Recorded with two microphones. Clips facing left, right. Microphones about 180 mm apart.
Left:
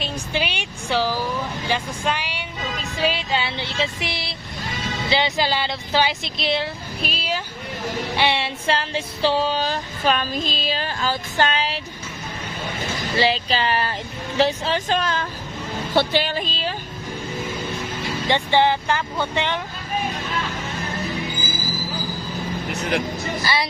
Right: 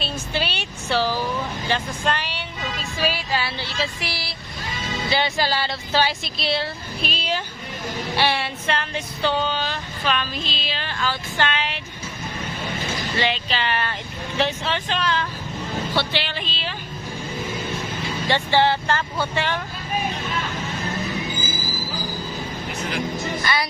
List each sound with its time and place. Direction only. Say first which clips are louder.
0.0 s speech: left 1 dB; 15° left (ahead or behind)
3.0 s music: left 2 dB; 20° left (ahead or behind)
5.0 s speech: left 1 dB; 20° left (ahead or behind)
8.6 s female singing: left 2 dB; 30° left (ahead or behind)
13.1 s female singing: left 5 dB; 35° left (ahead or behind)
14.3 s speech: left 4 dB; 35° left (ahead or behind)
18.3 s speech: left 1 dB; 15° left (ahead or behind)
19.3 s music: left 1 dB; 20° left (ahead or behind)
22.7 s vehicle: left 6 dB; 70° left (ahead or behind)
23.4 s music: left 1 dB; 30° left (ahead or behind)